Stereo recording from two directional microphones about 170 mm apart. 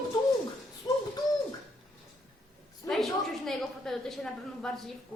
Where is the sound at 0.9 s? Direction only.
25° left (ahead or behind).